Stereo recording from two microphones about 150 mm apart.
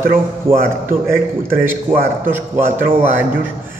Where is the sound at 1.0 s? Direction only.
15° right (ahead or behind).